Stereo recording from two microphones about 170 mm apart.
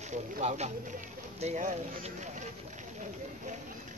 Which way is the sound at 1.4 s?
45° right (ahead or behind).